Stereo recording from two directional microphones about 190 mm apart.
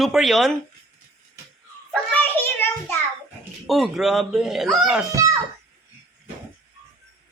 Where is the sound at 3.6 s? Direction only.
Centre (ahead or behind).